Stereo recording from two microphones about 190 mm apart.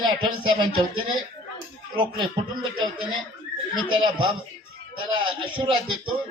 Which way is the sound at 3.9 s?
25° right (ahead or behind).